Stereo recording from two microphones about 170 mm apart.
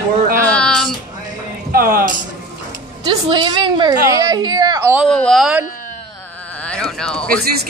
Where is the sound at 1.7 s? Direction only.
60° right (ahead or behind).